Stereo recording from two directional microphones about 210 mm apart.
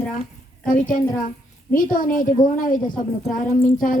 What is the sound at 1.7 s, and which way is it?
A woman's voice, 40° left (ahead or behind).